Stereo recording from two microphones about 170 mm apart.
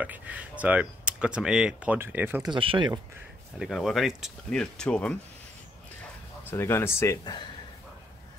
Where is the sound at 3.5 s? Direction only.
Centre (ahead or behind).